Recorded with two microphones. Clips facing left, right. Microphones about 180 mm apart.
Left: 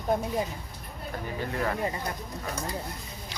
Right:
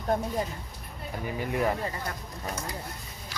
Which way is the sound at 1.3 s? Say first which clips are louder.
Right 3 dB; 15° right (ahead or behind).